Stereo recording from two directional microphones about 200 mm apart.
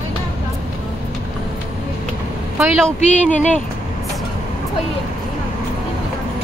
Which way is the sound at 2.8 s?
5° left (ahead or behind).